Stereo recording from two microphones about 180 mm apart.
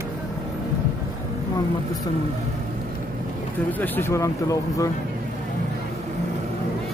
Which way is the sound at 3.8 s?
10° left (ahead or behind).